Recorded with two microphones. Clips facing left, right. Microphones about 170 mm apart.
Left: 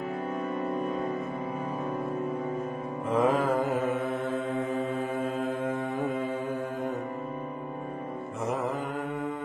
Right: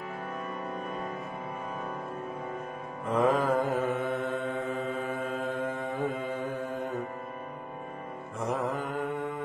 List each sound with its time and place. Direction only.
3.2 s mantra: centre (ahead or behind)
8.5 s mantra: centre (ahead or behind)